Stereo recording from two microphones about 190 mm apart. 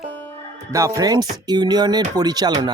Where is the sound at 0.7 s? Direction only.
15° right (ahead or behind).